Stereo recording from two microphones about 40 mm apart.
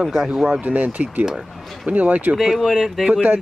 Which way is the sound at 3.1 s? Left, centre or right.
Right.